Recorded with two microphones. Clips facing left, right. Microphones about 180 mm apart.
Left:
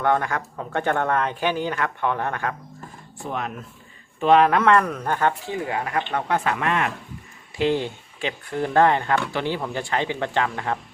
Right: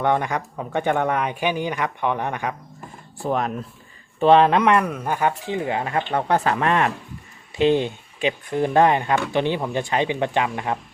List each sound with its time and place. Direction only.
0.0 s speech: 20° right (ahead or behind)
3.2 s speech: 40° right (ahead or behind); by 5.5 s 10° right (ahead or behind)
5.5 s speech: 25° right (ahead or behind)
6.1 s speech: 35° right (ahead or behind)
7.6 s speech: 20° right (ahead or behind)